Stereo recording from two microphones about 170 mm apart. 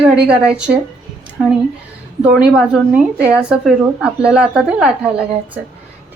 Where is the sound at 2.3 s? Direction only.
5° right (ahead or behind).